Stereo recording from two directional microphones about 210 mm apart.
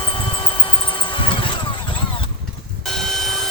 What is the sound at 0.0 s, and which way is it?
Vehicle, 25° left (ahead or behind).